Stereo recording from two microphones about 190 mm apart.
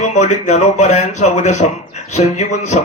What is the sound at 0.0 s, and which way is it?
Speech, 40° left (ahead or behind).